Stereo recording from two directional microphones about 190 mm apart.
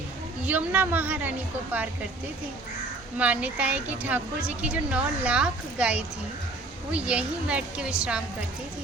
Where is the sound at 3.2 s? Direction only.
5° right (ahead or behind).